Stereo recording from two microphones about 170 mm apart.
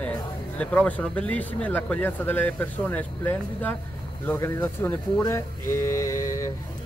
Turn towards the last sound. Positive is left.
turn(degrees=15)  # may be behind; listen again after turning